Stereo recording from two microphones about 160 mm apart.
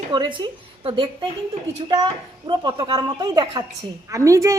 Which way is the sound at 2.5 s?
30° right (ahead or behind).